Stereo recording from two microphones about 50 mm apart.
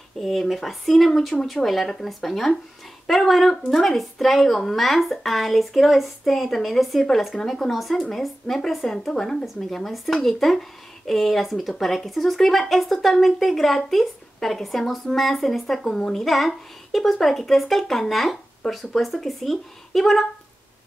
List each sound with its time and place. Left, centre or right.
0.2 s speech: centre